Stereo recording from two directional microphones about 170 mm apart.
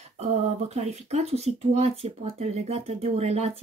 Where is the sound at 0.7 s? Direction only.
40° right (ahead or behind).